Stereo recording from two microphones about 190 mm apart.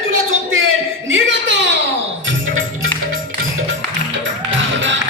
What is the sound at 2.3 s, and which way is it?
Music, 90° right.